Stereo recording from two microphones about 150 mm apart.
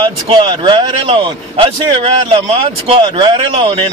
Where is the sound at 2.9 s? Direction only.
30° right (ahead or behind).